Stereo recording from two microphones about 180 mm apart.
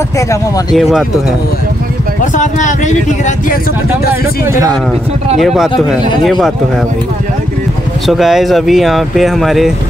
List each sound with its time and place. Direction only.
0.7 s speech: centre (ahead or behind)
2.3 s speech: 45° left (ahead or behind)
4.5 s speech: 20° right (ahead or behind)
5.4 s speech: centre (ahead or behind)
8.1 s speech: centre (ahead or behind)